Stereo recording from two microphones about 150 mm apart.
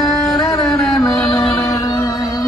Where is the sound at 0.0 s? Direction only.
20° left (ahead or behind).